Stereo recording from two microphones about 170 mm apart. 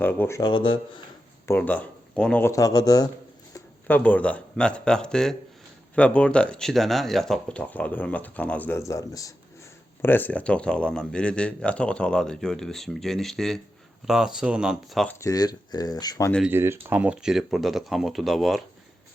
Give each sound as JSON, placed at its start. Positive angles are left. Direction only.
{"t": 0.0, "sound": "speech", "side_deg": 10}
{"t": 1.5, "sound": "speech", "side_deg": 10}
{"t": 2.5, "sound": "speech", "side_deg": 20}
{"t": 3.5, "sound": "speech", "side_deg": 10}
{"t": 15.1, "sound": "speech", "side_deg": 20}
{"t": 16.5, "sound": "speech", "side_deg": -10}